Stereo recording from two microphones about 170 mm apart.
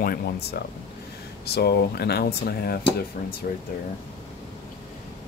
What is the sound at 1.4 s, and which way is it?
Speech, 70° left (ahead or behind).